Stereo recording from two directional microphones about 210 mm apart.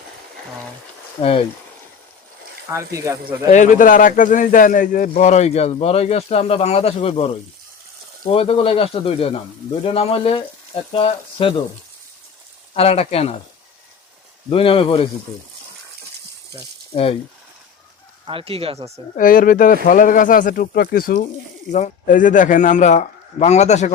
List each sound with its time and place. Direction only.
1.2 s speech: 25° left (ahead or behind)
2.6 s speech: 15° right (ahead or behind)
3.5 s speech: 35° left (ahead or behind)
12.7 s speech: 30° left (ahead or behind)
14.5 s speech: 25° left (ahead or behind)
16.9 s speech: 25° left (ahead or behind)
18.3 s speech: 25° right (ahead or behind)
19.1 s speech: 40° left (ahead or behind)